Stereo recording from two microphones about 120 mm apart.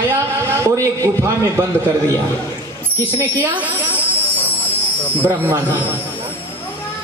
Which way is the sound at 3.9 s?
15° left (ahead or behind).